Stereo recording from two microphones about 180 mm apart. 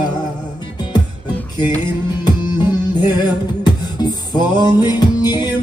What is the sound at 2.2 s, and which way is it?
Music, 25° left (ahead or behind).